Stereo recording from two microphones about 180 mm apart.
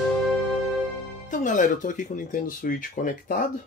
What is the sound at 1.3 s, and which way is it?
Speech, 45° left (ahead or behind).